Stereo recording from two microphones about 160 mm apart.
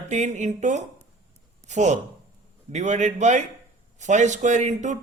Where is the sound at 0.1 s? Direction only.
45° right (ahead or behind).